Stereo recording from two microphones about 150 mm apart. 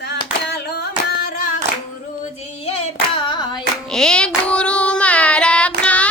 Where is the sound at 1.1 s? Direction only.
90° left.